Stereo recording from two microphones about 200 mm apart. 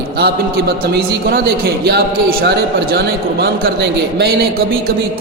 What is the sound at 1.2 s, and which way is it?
A man's voice, 50° right (ahead or behind).